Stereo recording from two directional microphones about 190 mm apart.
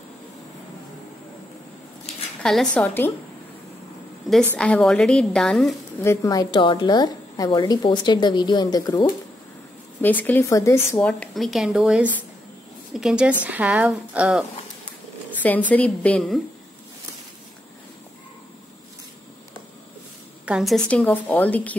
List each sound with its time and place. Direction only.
2.4 s speech: 5° left (ahead or behind)
4.2 s a sound: centre (ahead or behind)
4.6 s speech: 5° left (ahead or behind)
6.0 s a woman's voice: 20° left (ahead or behind)
10.0 s a woman's voice: 10° left (ahead or behind)
15.4 s a woman's voice: 10° left (ahead or behind)
20.4 s a woman's voice: centre (ahead or behind)